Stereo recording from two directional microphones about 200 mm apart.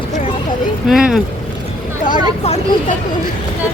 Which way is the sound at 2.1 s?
35° left (ahead or behind).